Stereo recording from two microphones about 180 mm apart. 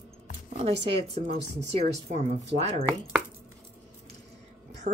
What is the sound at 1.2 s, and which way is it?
Speech, 65° right (ahead or behind).